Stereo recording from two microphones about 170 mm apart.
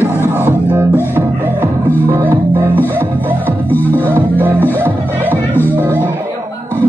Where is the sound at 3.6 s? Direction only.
10° left (ahead or behind).